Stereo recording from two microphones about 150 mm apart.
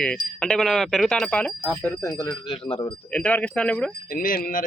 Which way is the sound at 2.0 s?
20° left (ahead or behind).